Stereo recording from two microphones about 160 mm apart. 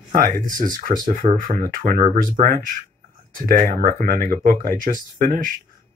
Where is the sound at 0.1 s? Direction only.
60° right (ahead or behind).